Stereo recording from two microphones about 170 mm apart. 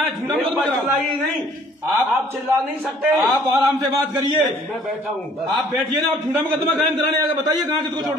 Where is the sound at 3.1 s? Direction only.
10° right (ahead or behind).